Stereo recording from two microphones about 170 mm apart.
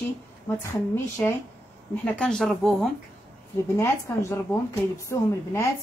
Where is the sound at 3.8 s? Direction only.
15° left (ahead or behind).